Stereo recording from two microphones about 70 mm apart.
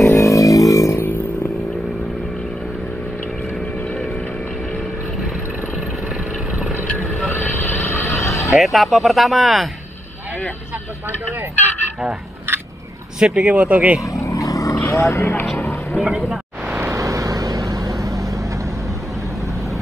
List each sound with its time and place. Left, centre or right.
0.0 s vehicle: left
7.3 s vehicle: left
8.2 s neigh: left
8.5 s speech: centre
13.2 s speech: centre
14.0 s vehicle: left
14.8 s speech: left
15.9 s speech: centre
16.8 s vehicle: right